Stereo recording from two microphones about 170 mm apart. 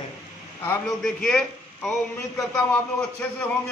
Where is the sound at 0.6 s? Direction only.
10° left (ahead or behind).